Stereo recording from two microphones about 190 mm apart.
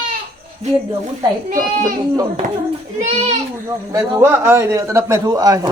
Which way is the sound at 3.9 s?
15° right (ahead or behind).